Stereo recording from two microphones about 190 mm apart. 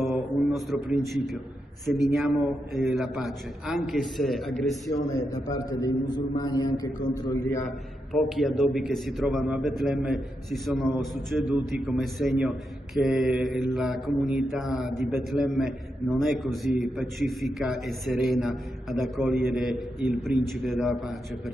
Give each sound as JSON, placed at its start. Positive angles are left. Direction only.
{"t": 0.0, "sound": "a sound", "side_deg": 0}
{"t": 2.1, "sound": "a man's voice", "side_deg": 0}
{"t": 5.5, "sound": "a man's voice", "side_deg": 20}
{"t": 7.6, "sound": "a man's voice", "side_deg": 0}